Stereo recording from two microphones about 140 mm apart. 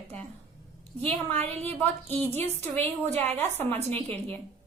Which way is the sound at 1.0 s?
10° left (ahead or behind).